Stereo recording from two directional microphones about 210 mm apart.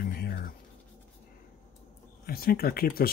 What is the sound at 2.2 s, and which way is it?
Speech, 45° left (ahead or behind).